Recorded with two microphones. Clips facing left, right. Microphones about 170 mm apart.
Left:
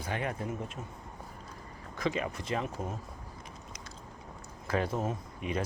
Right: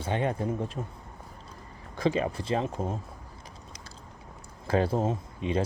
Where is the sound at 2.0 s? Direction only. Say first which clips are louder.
Right 6 dB; 30° right (ahead or behind).